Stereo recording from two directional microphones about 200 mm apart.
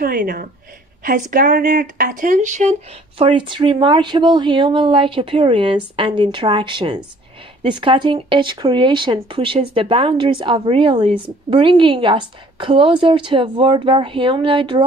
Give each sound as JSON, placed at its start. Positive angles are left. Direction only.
{"t": 0.0, "sound": "speech", "side_deg": -50}
{"t": 3.2, "sound": "speech", "side_deg": -25}